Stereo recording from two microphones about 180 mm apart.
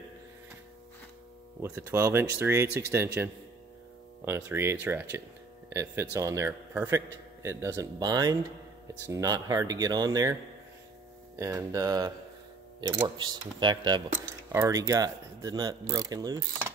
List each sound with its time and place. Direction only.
1.6 s speech: 15° right (ahead or behind)
11.3 s speech: 15° right (ahead or behind)